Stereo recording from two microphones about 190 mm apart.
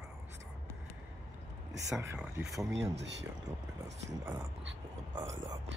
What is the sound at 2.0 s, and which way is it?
Speech, 10° right (ahead or behind).